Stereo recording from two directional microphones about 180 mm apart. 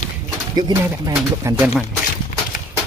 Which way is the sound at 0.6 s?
20° right (ahead or behind).